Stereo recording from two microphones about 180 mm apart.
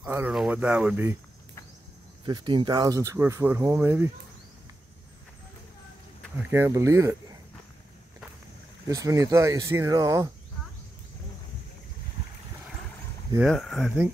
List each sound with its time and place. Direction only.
0.0 s speech: 10° right (ahead or behind)
2.2 s speech: 25° right (ahead or behind)
6.3 s speech: 15° right (ahead or behind)
8.8 s speech: 20° right (ahead or behind)
13.4 s speech: centre (ahead or behind)